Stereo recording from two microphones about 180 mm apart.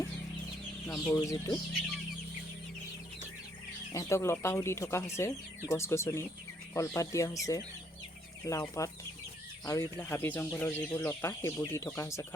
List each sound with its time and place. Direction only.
1.0 s speech: 15° left (ahead or behind)
3.9 s speech: 15° left (ahead or behind)